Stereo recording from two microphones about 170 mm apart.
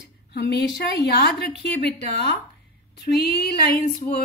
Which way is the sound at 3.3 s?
70° left (ahead or behind).